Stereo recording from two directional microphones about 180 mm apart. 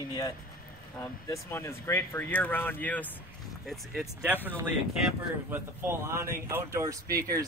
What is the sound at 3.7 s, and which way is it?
Speech, 5° right (ahead or behind).